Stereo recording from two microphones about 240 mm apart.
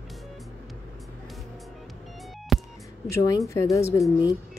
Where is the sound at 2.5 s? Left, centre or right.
Centre.